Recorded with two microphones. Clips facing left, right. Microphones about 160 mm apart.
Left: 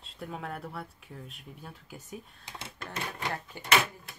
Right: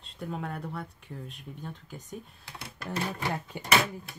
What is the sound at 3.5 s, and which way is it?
Speech, 15° right (ahead or behind).